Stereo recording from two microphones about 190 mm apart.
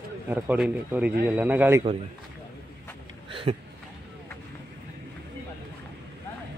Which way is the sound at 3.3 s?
25° right (ahead or behind).